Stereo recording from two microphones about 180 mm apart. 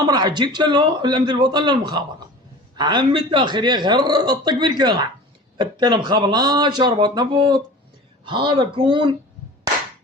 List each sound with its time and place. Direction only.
0.1 s a man's voice: 25° right (ahead or behind)